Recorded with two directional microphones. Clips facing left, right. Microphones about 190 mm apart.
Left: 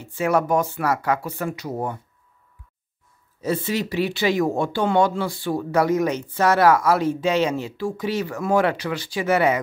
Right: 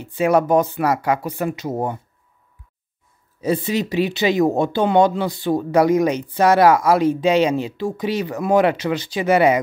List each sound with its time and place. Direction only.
0.0 s speech: 15° right (ahead or behind)
3.3 s speech: 15° right (ahead or behind)